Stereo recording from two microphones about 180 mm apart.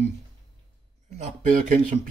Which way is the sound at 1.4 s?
45° right (ahead or behind).